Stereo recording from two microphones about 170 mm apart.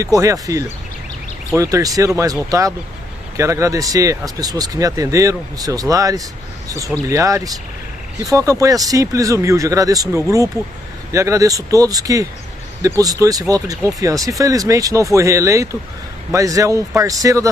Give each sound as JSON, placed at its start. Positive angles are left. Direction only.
{"t": 0.0, "sound": "speech", "side_deg": -20}
{"t": 3.3, "sound": "speech", "side_deg": -20}